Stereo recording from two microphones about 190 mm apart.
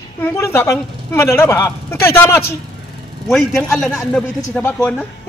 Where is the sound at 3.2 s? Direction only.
Centre (ahead or behind).